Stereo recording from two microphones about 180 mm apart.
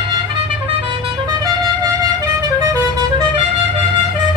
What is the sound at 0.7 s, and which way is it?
Vehicle, 30° right (ahead or behind).